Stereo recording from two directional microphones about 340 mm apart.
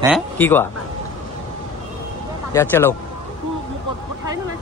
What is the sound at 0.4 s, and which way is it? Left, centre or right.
Speech, centre.